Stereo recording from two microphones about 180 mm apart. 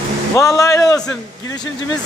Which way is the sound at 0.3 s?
15° left (ahead or behind).